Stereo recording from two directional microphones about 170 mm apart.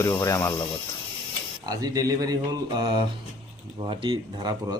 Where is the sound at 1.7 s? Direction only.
20° right (ahead or behind).